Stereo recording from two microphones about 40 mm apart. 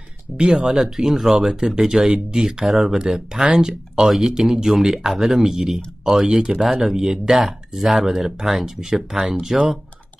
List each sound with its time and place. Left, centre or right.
0.5 s speech: centre